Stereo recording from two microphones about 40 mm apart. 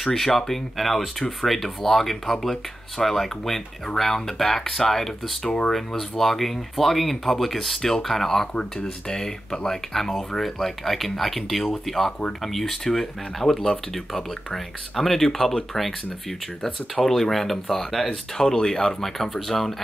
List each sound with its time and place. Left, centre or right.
0.0 s speech: centre
8.5 s speech: left